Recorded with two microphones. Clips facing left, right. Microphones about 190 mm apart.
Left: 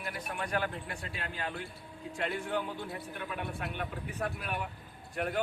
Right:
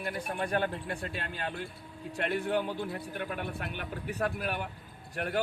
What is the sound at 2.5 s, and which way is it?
A man's voice, 60° right (ahead or behind).